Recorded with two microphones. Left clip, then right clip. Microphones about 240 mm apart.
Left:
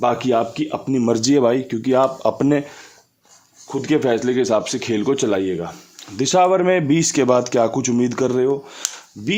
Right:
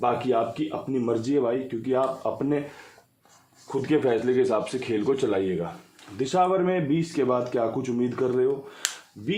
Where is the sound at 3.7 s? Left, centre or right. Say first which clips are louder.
Left 5 dB; left.